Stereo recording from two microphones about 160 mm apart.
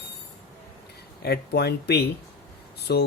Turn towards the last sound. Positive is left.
turn(degrees=90)